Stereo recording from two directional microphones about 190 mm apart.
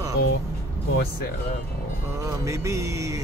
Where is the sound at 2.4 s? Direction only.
15° right (ahead or behind).